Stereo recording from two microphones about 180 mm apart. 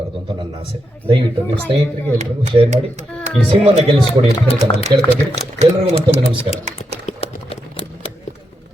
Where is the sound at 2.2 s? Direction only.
40° right (ahead or behind); by 5.1 s 25° right (ahead or behind).